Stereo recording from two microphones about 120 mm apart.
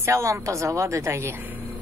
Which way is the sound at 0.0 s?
25° right (ahead or behind).